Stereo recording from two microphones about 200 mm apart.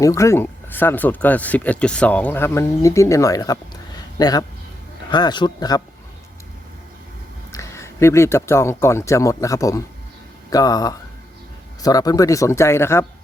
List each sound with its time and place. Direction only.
0.0 s speech: 15° left (ahead or behind)
7.5 s speech: 15° left (ahead or behind)